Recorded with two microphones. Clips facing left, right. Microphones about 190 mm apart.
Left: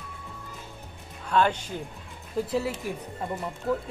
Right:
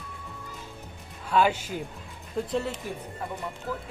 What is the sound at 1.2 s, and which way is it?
Speech, 5° right (ahead or behind).